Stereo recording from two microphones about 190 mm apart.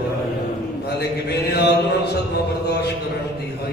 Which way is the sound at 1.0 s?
60° left (ahead or behind).